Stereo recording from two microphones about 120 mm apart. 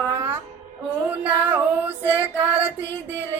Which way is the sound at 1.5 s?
15° right (ahead or behind).